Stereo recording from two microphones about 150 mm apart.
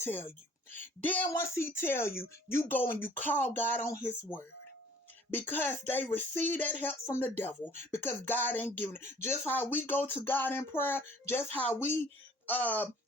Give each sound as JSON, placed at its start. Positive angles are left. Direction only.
{"t": 0.0, "sound": "speech", "side_deg": 15}
{"t": 5.5, "sound": "speech", "side_deg": 15}